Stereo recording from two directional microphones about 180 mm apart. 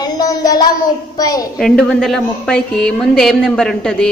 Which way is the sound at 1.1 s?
20° left (ahead or behind).